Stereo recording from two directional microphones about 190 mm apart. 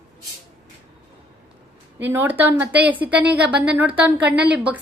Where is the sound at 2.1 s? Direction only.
10° right (ahead or behind).